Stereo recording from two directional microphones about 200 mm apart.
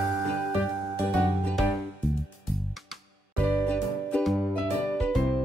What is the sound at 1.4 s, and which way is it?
Music, centre (ahead or behind).